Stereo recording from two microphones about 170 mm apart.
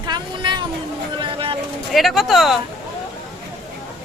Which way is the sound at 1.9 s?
Centre (ahead or behind).